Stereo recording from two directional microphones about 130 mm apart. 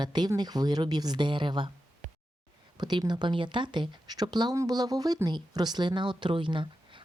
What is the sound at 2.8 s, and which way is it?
Speech, 35° right (ahead or behind).